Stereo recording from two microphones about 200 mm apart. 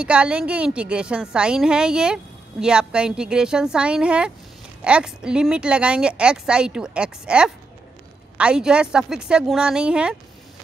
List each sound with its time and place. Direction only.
0.0 s speech: 5° right (ahead or behind)